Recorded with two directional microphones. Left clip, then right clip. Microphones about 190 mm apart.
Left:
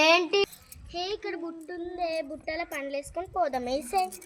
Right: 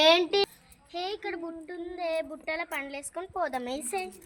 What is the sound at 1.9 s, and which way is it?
A woman's voice, 40° right (ahead or behind).